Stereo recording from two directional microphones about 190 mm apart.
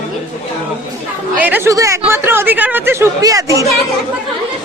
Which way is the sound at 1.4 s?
10° right (ahead or behind).